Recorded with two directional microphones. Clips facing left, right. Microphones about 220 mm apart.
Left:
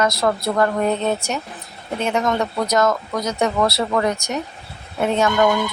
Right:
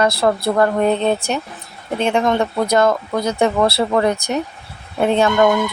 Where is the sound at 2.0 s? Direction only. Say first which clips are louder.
Right 4 dB; 30° right (ahead or behind).